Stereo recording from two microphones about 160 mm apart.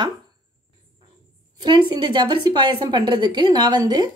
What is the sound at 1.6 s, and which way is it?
A woman's voice, 30° right (ahead or behind).